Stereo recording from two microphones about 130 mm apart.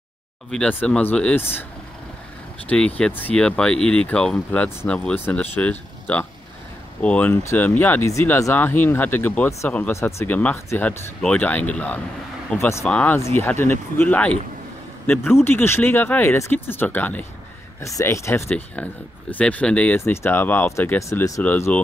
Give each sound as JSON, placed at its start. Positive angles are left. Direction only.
{"t": 0.5, "sound": "speech", "side_deg": 5}
{"t": 3.0, "sound": "speech", "side_deg": 15}
{"t": 12.8, "sound": "speech", "side_deg": 10}
{"t": 13.2, "sound": "speech", "side_deg": 20}
{"t": 20.0, "sound": "speech", "side_deg": 20}